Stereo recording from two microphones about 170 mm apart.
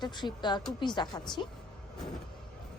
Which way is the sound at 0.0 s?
25° left (ahead or behind).